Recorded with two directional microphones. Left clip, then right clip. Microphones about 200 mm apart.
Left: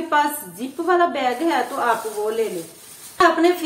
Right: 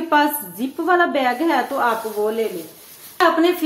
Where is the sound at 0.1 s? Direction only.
40° right (ahead or behind).